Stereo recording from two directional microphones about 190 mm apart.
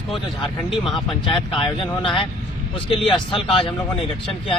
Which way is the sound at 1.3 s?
25° left (ahead or behind).